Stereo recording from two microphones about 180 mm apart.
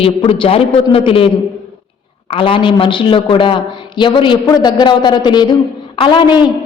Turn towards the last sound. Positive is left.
turn(degrees=25)  # may be behind; listen again after turning